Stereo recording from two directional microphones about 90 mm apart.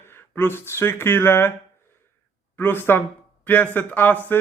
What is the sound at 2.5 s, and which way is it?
Speech, 25° left (ahead or behind).